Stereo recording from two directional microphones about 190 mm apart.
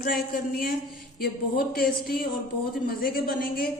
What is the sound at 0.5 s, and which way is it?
A woman's voice, 50° left (ahead or behind).